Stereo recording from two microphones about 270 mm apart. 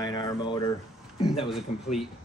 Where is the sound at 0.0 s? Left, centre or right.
Centre.